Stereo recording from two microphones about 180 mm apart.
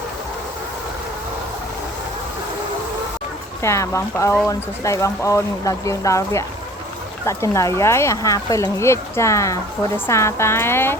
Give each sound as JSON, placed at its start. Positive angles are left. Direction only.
{"t": 3.6, "sound": "speech", "side_deg": 15}